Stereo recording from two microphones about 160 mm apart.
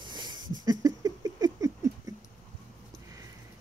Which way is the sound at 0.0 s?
30° right (ahead or behind).